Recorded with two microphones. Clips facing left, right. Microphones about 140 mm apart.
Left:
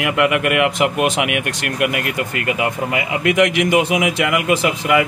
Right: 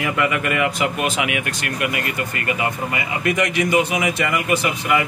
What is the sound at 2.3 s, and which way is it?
Speech, 90° left.